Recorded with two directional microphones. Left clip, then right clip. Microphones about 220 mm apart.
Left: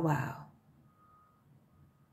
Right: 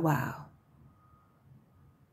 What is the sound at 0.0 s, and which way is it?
Speech, 25° right (ahead or behind).